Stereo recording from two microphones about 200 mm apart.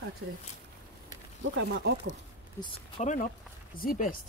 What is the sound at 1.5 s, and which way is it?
Speech, 60° right (ahead or behind).